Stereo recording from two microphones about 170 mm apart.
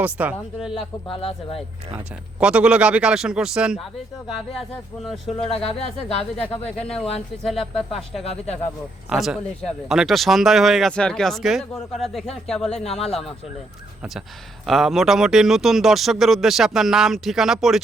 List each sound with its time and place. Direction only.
0.0 s speech: 10° right (ahead or behind)
1.0 s speech: 30° left (ahead or behind)
2.4 s speech: 5° right (ahead or behind)
6.7 s speech: 5° left (ahead or behind)
8.2 s speech: 40° left (ahead or behind)
9.0 s speech: 5° right (ahead or behind)
12.8 s speech: 35° left (ahead or behind)
14.7 s speech: centre (ahead or behind)